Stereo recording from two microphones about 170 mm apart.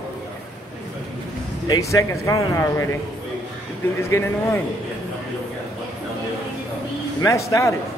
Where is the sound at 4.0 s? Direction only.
15° left (ahead or behind).